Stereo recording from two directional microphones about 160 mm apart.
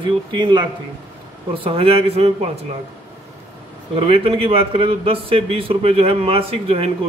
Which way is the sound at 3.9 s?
35° right (ahead or behind).